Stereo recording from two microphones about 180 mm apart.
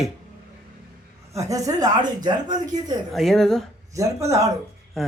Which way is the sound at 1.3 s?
20° right (ahead or behind).